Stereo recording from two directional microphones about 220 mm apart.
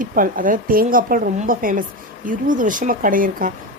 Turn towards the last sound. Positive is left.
turn(degrees=-40)  # may be behind; listen again after turning